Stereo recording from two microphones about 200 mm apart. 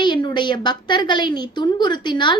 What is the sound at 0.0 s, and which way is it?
A woman's voice, 20° left (ahead or behind).